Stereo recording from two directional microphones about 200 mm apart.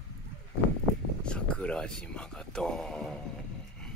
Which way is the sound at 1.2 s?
5° left (ahead or behind).